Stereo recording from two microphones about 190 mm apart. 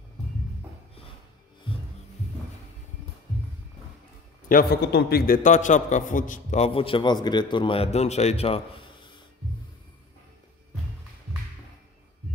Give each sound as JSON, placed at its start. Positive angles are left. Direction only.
{"t": 1.7, "sound": "music", "side_deg": 25}
{"t": 4.5, "sound": "a man's voice", "side_deg": 55}